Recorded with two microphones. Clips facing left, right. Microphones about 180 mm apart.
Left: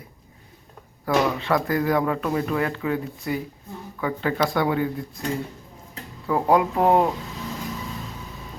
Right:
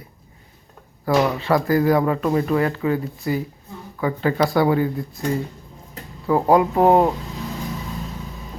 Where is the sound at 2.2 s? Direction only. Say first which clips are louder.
Right 4 dB; 30° right (ahead or behind).